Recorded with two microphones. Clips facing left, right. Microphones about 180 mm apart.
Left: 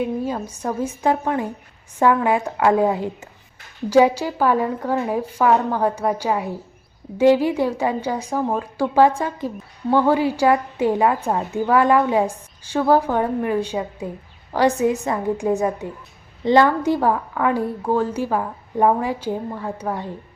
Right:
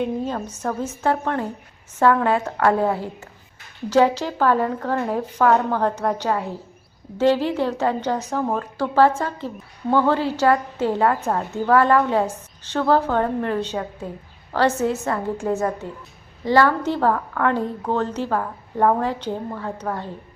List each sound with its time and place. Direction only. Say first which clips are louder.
0.0 s a woman's voice: left 1 dB; 10° left (ahead or behind)